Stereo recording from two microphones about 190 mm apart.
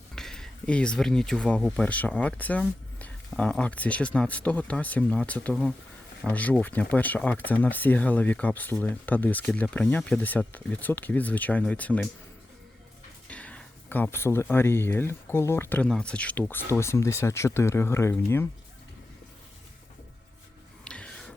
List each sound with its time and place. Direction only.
0.2 s speech: centre (ahead or behind)
13.2 s speech: 5° left (ahead or behind)
20.8 s music: 5° left (ahead or behind)